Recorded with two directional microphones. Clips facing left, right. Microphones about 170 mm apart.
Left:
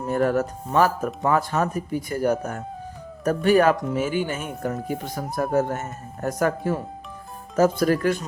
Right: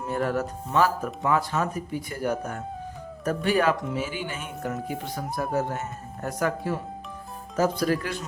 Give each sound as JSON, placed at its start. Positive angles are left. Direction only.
{"t": 0.1, "sound": "speech", "side_deg": 45}